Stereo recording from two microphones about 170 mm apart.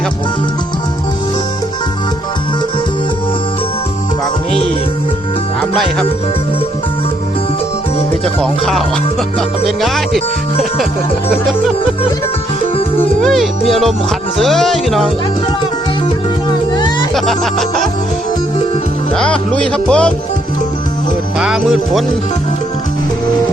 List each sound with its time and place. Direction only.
8.2 s music: centre (ahead or behind)
11.3 s music: 5° right (ahead or behind)
13.2 s music: centre (ahead or behind)
16.5 s music: 25° left (ahead or behind)
17.2 s music: centre (ahead or behind)
19.1 s music: 5° left (ahead or behind)
21.3 s music: 5° right (ahead or behind)